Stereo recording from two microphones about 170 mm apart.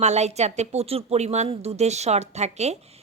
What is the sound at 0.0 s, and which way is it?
A woman's voice, 40° right (ahead or behind).